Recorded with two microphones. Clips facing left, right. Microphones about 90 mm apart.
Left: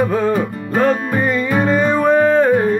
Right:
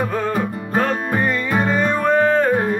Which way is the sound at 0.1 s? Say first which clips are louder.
Left 4 dB; centre (ahead or behind).